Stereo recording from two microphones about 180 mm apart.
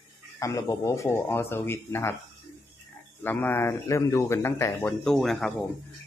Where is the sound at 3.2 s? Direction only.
10° left (ahead or behind).